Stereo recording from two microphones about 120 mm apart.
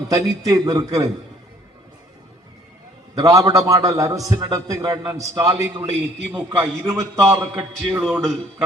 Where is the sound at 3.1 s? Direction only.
30° right (ahead or behind).